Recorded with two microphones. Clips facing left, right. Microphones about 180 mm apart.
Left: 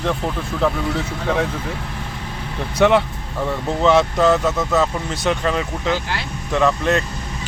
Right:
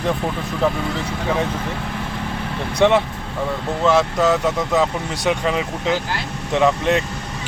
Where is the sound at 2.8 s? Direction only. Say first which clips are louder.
Even; centre (ahead or behind).